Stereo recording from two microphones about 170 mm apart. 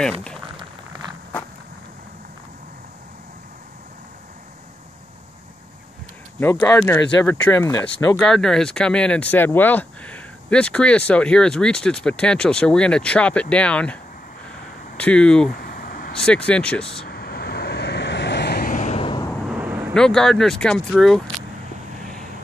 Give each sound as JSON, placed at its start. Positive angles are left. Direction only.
{"t": 6.4, "sound": "speech", "side_deg": 15}
{"t": 7.8, "sound": "speech", "side_deg": 5}
{"t": 15.0, "sound": "speech", "side_deg": 5}
{"t": 15.6, "sound": "vehicle", "side_deg": 60}
{"t": 16.2, "sound": "speech", "side_deg": 5}
{"t": 17.1, "sound": "vehicle", "side_deg": 70}
{"t": 18.7, "sound": "vehicle", "side_deg": 45}
{"t": 19.5, "sound": "vehicle", "side_deg": -10}
{"t": 19.9, "sound": "speech", "side_deg": 5}